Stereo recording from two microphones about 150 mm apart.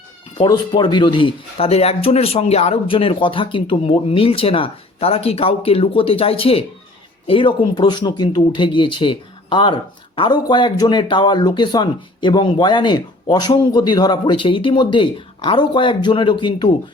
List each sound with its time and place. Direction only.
0.3 s speech: 30° left (ahead or behind)